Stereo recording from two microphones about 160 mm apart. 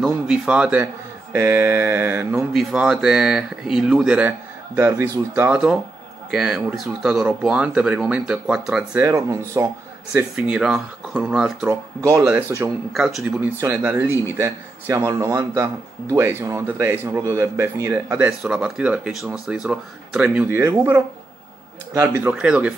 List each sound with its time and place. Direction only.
0.0 s a man's voice: 5° right (ahead or behind)
4.7 s a man's voice: 15° right (ahead or behind)
9.0 s speech: 20° right (ahead or behind)
10.1 s speech: 5° right (ahead or behind)
11.7 s a man's voice: 20° right (ahead or behind)
12.9 s speech: centre (ahead or behind)
13.6 s a man's voice: 15° right (ahead or behind)